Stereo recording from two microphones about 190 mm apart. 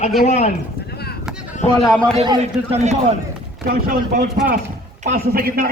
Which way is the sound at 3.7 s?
50° right (ahead or behind).